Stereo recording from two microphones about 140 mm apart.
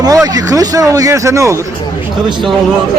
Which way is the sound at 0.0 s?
25° right (ahead or behind).